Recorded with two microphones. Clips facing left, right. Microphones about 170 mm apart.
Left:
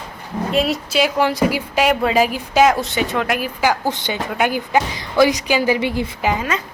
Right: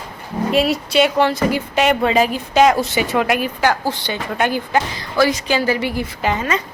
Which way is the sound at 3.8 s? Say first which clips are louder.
Left 1 dB; 20° left (ahead or behind).